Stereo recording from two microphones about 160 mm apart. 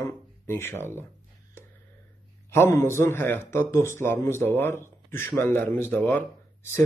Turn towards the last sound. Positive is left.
turn(degrees=15)  # may be behind; listen again after turning